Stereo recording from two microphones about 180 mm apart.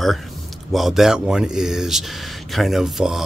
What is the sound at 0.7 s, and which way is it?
Speech, centre (ahead or behind).